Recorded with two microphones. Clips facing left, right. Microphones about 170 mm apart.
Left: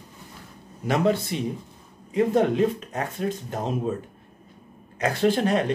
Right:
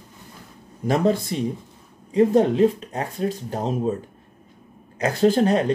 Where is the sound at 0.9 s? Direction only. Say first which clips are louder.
Right 2 dB; 40° right (ahead or behind).